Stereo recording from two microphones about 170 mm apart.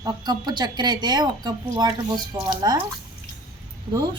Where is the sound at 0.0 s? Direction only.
25° right (ahead or behind).